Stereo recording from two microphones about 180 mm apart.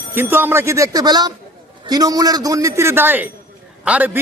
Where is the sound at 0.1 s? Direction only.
10° right (ahead or behind).